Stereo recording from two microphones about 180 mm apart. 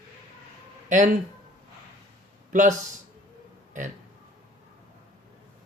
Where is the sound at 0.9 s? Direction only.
45° right (ahead or behind).